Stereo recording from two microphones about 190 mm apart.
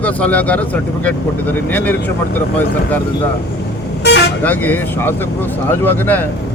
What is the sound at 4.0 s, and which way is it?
Speech, 60° left (ahead or behind).